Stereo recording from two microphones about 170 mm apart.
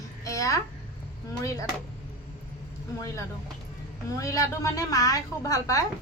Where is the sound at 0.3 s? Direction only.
20° left (ahead or behind).